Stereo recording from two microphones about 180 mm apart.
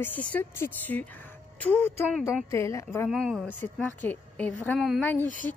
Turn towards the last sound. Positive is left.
turn(degrees=10)  # may be behind; listen again after turning